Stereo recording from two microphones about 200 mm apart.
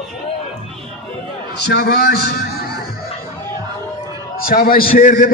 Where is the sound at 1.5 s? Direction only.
55° left (ahead or behind).